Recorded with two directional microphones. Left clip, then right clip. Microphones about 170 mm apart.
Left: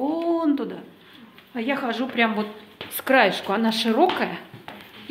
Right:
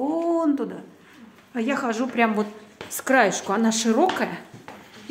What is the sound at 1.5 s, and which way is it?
A woman's voice, 15° right (ahead or behind).